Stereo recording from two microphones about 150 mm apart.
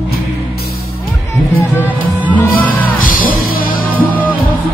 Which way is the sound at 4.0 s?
10° left (ahead or behind).